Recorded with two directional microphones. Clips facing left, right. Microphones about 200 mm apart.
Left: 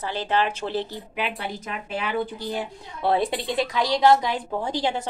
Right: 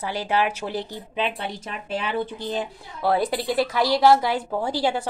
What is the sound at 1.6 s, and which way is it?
Speech, 30° right (ahead or behind).